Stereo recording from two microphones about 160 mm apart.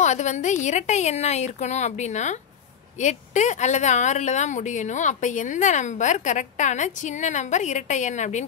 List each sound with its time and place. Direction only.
0.0 s a woman's voice: 50° left (ahead or behind)